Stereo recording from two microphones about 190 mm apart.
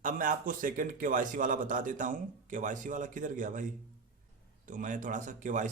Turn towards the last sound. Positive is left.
turn(degrees=-40)  # may be behind; listen again after turning